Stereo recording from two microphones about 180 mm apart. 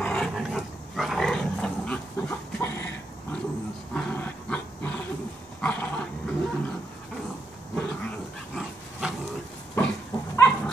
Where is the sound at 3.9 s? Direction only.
10° left (ahead or behind).